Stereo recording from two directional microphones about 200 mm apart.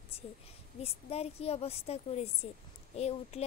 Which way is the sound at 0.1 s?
30° left (ahead or behind).